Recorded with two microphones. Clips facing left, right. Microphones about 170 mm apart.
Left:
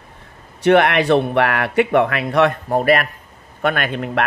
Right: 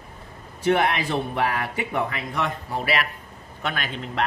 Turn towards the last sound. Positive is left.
turn(degrees=60)  # may be behind; listen again after turning